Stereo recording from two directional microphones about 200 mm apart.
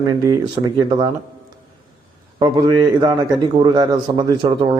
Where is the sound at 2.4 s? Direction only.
20° right (ahead or behind).